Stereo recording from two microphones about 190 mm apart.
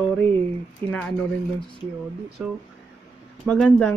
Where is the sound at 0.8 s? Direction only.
5° left (ahead or behind).